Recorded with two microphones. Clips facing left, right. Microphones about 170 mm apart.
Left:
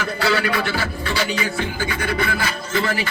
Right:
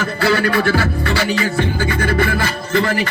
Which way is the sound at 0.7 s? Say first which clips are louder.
Right 7 dB; 55° right (ahead or behind).